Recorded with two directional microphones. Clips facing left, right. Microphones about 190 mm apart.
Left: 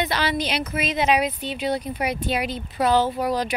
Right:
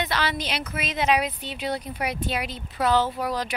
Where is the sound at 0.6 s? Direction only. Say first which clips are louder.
Left 1 dB; centre (ahead or behind).